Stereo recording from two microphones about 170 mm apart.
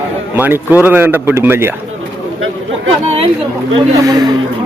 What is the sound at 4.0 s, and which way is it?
Speech, 20° right (ahead or behind).